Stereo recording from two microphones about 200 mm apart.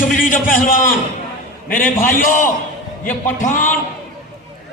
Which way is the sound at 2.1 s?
40° left (ahead or behind).